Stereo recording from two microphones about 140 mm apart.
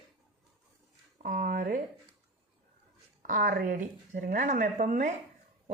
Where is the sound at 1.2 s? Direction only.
85° right.